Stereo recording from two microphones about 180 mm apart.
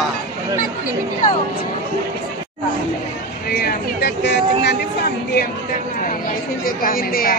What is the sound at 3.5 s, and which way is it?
Speech, 60° left (ahead or behind).